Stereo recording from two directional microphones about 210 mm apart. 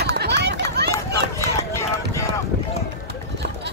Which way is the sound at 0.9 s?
15° left (ahead or behind).